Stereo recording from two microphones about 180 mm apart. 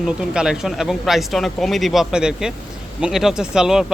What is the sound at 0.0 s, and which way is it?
Speech, 5° right (ahead or behind).